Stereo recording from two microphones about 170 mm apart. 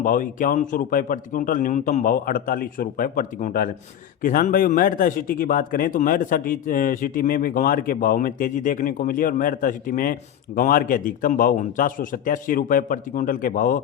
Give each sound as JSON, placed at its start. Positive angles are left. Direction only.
{"t": 0.0, "sound": "a man's voice", "side_deg": 55}